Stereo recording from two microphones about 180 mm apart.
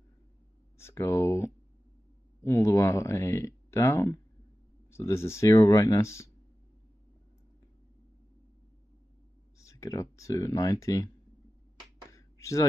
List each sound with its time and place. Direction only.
0.7 s speech: 15° left (ahead or behind)
9.6 s speech: 15° left (ahead or behind)
12.1 s a sound: 15° left (ahead or behind)